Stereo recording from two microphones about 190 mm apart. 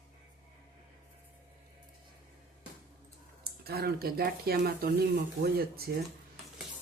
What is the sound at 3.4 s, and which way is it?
Speech, 55° right (ahead or behind).